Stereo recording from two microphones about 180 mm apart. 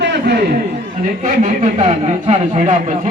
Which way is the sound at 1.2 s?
45° right (ahead or behind).